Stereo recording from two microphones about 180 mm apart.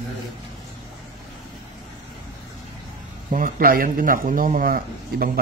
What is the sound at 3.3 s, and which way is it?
A man's voice, 50° right (ahead or behind).